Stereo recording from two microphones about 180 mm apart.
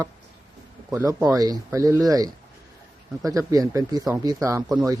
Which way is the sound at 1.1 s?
20° right (ahead or behind).